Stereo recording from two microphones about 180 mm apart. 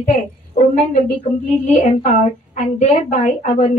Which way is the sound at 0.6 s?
45° left (ahead or behind).